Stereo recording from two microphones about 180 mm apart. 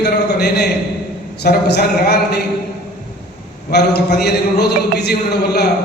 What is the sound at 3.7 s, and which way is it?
A man's voice, 65° left (ahead or behind).